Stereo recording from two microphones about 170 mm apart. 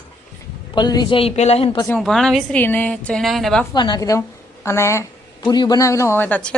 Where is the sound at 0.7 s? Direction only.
25° left (ahead or behind).